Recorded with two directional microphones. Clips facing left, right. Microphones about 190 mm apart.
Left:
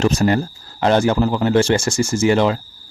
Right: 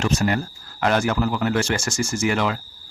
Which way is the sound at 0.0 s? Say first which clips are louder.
Left 5 dB; 35° left (ahead or behind).